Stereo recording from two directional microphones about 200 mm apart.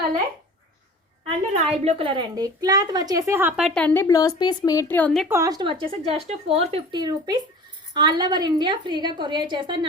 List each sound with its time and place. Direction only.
1.5 s a woman's voice: 30° right (ahead or behind); by 5.3 s 5° left (ahead or behind)
5.3 s speech: 15° right (ahead or behind)